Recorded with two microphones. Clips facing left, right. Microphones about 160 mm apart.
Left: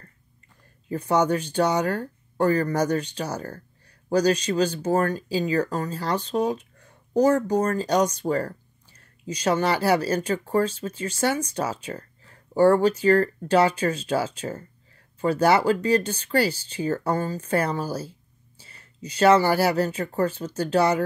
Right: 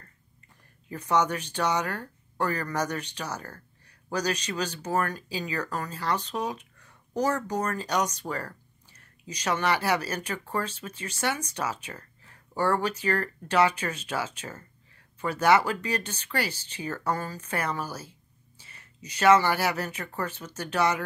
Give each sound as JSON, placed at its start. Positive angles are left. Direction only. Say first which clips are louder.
{"t": 0.8, "sound": "speech", "louder": "left 4 dB", "side_deg": 30}